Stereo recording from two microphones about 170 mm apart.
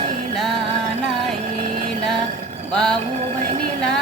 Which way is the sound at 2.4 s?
40° right (ahead or behind).